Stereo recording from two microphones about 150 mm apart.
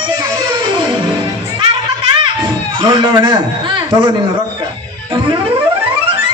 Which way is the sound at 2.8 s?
30° right (ahead or behind).